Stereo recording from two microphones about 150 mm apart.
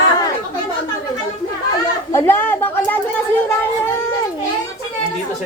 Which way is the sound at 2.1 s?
20° left (ahead or behind).